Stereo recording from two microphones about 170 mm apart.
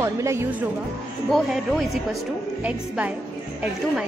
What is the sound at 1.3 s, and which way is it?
Speech, centre (ahead or behind).